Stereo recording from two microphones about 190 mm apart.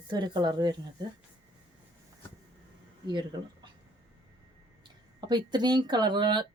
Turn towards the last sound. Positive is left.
turn(degrees=-25)  # may be behind; listen again after turning